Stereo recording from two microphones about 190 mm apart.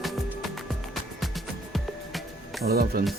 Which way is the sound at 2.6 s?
55° right (ahead or behind).